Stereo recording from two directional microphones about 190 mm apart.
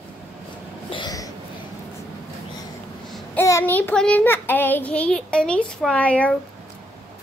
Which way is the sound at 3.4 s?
15° left (ahead or behind).